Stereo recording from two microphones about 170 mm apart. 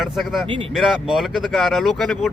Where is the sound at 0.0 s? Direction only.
Centre (ahead or behind).